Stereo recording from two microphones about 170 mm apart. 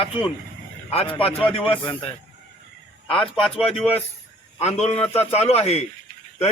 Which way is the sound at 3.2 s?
30° left (ahead or behind).